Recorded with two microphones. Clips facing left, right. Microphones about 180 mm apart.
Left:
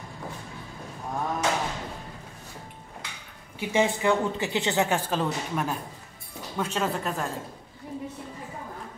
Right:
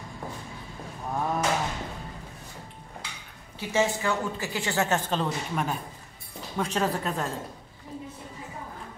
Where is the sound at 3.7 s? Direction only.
15° left (ahead or behind); by 7.2 s centre (ahead or behind).